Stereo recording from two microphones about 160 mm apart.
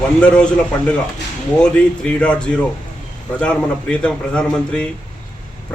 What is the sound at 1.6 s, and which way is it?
A man's voice, 5° left (ahead or behind).